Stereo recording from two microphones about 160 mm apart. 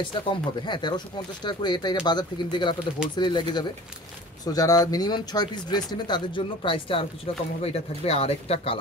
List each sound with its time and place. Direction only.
0.0 s speech: 30° left (ahead or behind)